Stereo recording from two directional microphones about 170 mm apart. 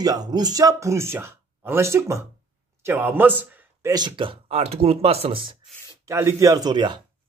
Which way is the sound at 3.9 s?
25° right (ahead or behind).